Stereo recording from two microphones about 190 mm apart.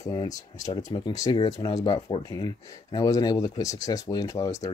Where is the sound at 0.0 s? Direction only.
20° left (ahead or behind).